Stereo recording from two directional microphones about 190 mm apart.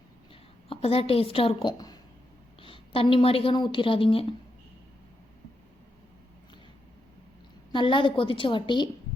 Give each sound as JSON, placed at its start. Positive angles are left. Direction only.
{"t": 0.7, "sound": "a woman's voice", "side_deg": 30}
{"t": 7.7, "sound": "a woman's voice", "side_deg": 25}